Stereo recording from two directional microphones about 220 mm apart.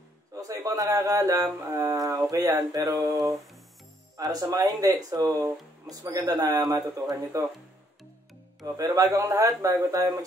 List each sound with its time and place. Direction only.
0.3 s speech: 15° right (ahead or behind)
8.7 s speech: 15° right (ahead or behind)